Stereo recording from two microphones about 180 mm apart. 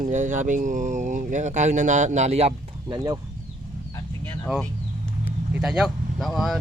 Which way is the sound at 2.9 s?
25° right (ahead or behind).